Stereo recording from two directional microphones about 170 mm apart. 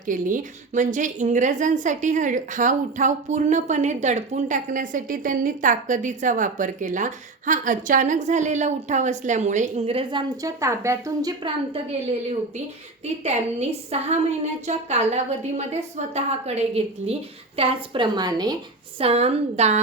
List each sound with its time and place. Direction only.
0.0 s a woman's voice: 50° right (ahead or behind); by 11.5 s 20° right (ahead or behind)
13.2 s a woman's voice: 40° right (ahead or behind)
18.9 s a woman's voice: 35° right (ahead or behind)